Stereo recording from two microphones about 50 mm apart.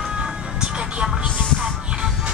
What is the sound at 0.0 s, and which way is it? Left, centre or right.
Music, centre.